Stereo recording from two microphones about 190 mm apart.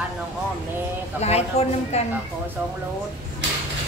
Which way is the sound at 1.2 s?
35° left (ahead or behind).